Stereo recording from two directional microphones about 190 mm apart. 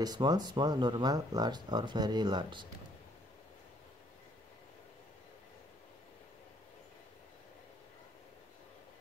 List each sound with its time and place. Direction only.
0.0 s speech: 20° right (ahead or behind)